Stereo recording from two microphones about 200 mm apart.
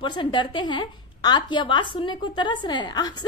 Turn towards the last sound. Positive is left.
turn(degrees=20)  # may be behind; listen again after turning